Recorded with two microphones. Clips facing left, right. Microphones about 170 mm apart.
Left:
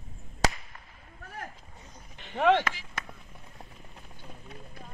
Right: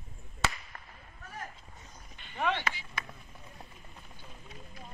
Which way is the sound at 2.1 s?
80° left.